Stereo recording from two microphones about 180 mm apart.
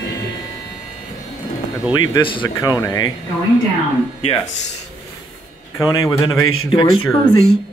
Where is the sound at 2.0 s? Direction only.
25° left (ahead or behind).